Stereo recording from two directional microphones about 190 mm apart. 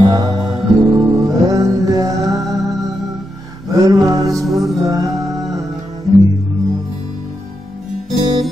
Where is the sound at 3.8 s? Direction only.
20° right (ahead or behind).